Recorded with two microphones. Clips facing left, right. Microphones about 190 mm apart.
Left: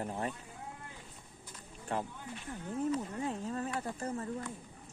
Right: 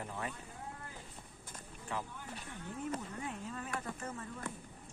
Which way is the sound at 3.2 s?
35° left (ahead or behind).